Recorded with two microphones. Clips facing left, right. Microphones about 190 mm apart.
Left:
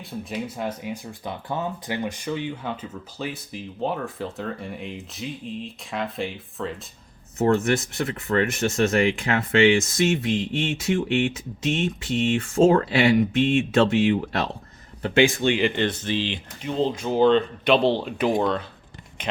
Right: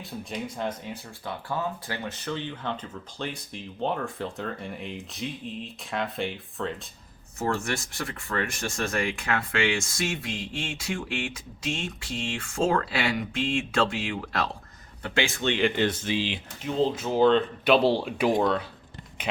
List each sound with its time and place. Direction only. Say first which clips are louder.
0.0 s speech: left 3 dB; centre (ahead or behind)
8.3 s speech: left 8 dB; 25° left (ahead or behind); by 15.7 s 10° left (ahead or behind)
15.7 s speech: left 1 dB; 10° right (ahead or behind)